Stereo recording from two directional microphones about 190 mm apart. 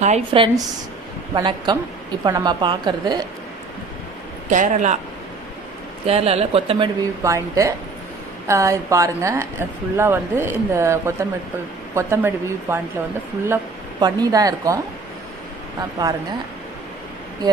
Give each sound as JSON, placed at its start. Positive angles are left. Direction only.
{"t": 0.0, "sound": "speech", "side_deg": -30}
{"t": 4.5, "sound": "speech", "side_deg": -40}
{"t": 6.0, "sound": "speech", "side_deg": -35}
{"t": 7.2, "sound": "a woman's voice", "side_deg": -15}
{"t": 16.0, "sound": "speech", "side_deg": -20}